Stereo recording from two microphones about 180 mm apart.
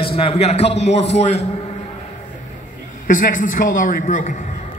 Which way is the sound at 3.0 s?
50° left (ahead or behind).